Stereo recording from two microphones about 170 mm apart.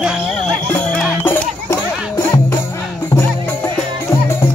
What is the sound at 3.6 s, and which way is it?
Music, 20° left (ahead or behind).